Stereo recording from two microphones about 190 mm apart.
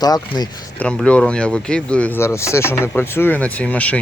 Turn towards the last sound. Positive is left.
turn(degrees=5)  # may be behind; listen again after turning